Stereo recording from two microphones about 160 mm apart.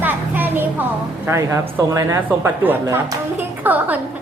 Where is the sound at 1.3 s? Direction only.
20° right (ahead or behind).